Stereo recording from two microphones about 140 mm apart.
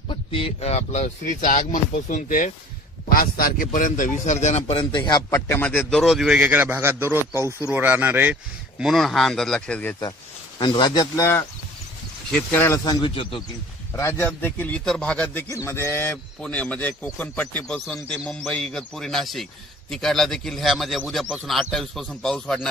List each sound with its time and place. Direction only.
0.1 s speech: 40° left (ahead or behind); by 2.5 s 70° left (ahead or behind)
3.1 s speech: 90° left; by 5.2 s 35° left (ahead or behind)
5.3 s a man's voice: 15° left (ahead or behind)
10.6 s a man's voice: 30° left (ahead or behind)
12.3 s a man's voice: 5° left (ahead or behind); by 13.1 s 25° left (ahead or behind)
13.1 s a man's voice: 40° left (ahead or behind)
13.9 s a man's voice: 20° left (ahead or behind); by 22.7 s 5° left (ahead or behind)